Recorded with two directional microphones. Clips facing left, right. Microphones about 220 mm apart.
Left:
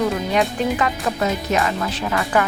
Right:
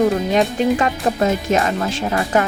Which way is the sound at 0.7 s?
30° right (ahead or behind).